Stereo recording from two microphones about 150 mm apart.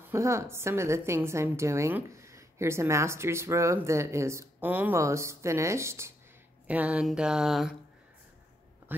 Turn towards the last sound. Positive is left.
turn(degrees=0)  # may be behind; listen again after turning